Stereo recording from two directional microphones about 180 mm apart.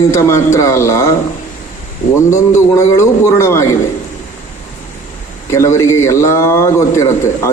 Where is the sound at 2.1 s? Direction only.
15° left (ahead or behind).